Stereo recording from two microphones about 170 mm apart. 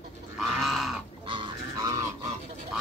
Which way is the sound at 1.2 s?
30° right (ahead or behind).